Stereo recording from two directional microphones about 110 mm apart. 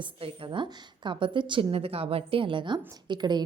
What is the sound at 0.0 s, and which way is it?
A woman's voice, 50° right (ahead or behind).